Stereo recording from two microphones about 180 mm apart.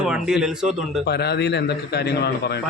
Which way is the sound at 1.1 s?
65° left (ahead or behind).